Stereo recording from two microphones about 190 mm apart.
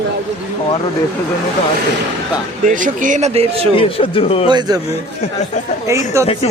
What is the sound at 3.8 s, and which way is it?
Speech, 30° left (ahead or behind).